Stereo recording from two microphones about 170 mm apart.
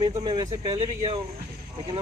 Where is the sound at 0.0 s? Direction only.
25° right (ahead or behind).